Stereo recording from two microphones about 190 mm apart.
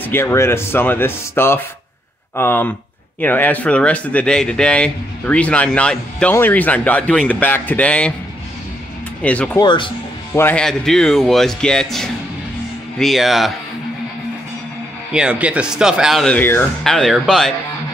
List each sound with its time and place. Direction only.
0.0 s speech: 10° left (ahead or behind)
9.2 s speech: 5° left (ahead or behind)
9.6 s speech: 25° left (ahead or behind)
10.3 s speech: 10° left (ahead or behind)
15.1 s speech: 5° right (ahead or behind)